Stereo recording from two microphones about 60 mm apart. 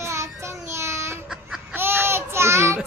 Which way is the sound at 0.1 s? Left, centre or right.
Right.